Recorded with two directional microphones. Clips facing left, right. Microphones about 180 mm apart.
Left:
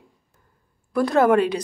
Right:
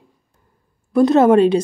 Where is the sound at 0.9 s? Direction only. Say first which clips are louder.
Right 6 dB; 25° right (ahead or behind).